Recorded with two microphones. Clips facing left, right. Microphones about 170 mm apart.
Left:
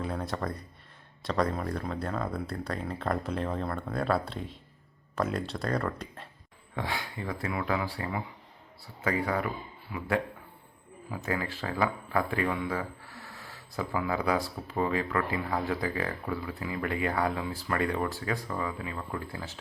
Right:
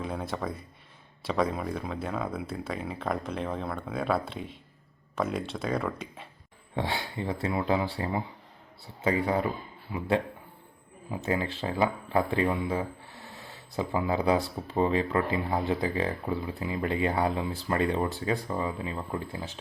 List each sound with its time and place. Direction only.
0.0 s speech: centre (ahead or behind)
6.7 s speech: 30° right (ahead or behind)
11.1 s speech: 25° right (ahead or behind)